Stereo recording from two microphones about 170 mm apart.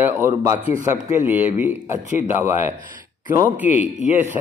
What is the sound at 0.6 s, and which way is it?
Speech, 50° right (ahead or behind).